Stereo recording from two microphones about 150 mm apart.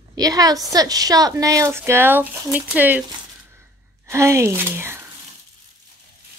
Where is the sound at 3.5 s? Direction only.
20° right (ahead or behind).